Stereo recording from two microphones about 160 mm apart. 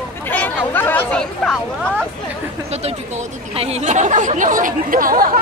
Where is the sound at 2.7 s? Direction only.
40° right (ahead or behind); by 5.3 s 60° right (ahead or behind).